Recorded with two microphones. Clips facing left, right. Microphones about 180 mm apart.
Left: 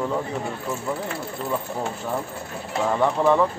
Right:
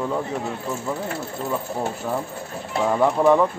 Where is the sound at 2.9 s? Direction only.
5° right (ahead or behind).